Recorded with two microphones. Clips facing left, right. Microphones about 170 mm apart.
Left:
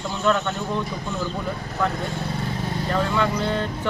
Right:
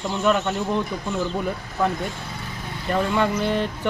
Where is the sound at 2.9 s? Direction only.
20° right (ahead or behind).